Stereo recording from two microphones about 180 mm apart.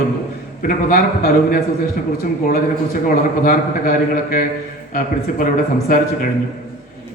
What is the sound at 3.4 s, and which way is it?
A man's voice, 50° left (ahead or behind).